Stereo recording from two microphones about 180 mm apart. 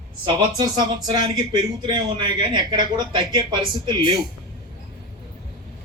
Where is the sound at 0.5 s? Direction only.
25° right (ahead or behind).